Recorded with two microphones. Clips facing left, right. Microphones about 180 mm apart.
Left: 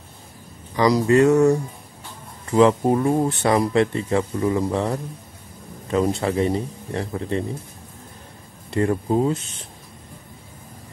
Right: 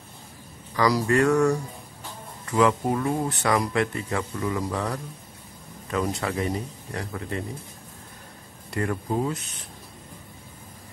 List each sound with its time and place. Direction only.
0.7 s speech: 20° left (ahead or behind)
8.6 s speech: 25° left (ahead or behind)